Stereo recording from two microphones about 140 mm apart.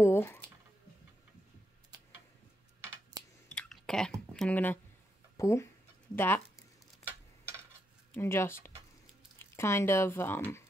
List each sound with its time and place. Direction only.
0.0 s speech: 15° left (ahead or behind)
3.5 s chewing: 5° left (ahead or behind)
5.4 s speech: 20° left (ahead or behind)
8.1 s speech: 15° left (ahead or behind)